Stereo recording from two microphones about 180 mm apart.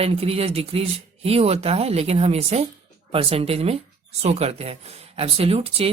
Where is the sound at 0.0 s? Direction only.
35° right (ahead or behind).